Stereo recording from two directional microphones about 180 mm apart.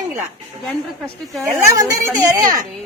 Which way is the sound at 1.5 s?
20° right (ahead or behind).